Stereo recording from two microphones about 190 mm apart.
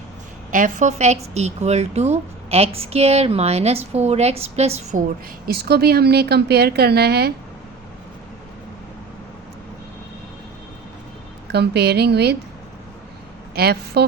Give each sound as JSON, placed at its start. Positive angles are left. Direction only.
{"t": 0.5, "sound": "a woman's voice", "side_deg": -45}
{"t": 5.5, "sound": "a woman's voice", "side_deg": -55}
{"t": 11.5, "sound": "a woman's voice", "side_deg": -60}
{"t": 13.6, "sound": "a woman's voice", "side_deg": -55}